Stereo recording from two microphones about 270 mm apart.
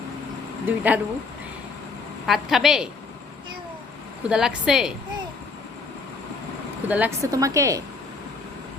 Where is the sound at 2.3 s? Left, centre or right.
Centre.